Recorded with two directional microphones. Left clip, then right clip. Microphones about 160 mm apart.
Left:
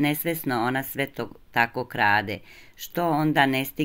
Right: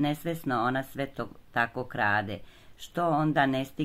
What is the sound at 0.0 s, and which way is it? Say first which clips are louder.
Speech: left 5 dB; 15° left (ahead or behind).